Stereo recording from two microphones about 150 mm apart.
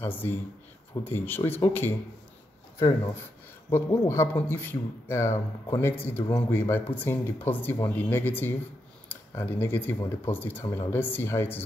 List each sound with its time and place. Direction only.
0.0 s speech: 15° left (ahead or behind)
3.7 s speech: 15° left (ahead or behind)